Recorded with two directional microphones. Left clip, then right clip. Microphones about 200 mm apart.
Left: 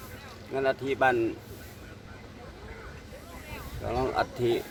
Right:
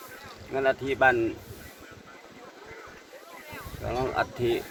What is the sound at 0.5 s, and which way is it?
Speech, 5° right (ahead or behind).